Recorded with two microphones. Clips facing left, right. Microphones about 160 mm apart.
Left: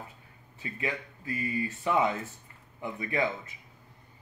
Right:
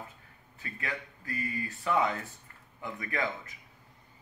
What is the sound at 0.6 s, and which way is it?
Speech, 20° left (ahead or behind).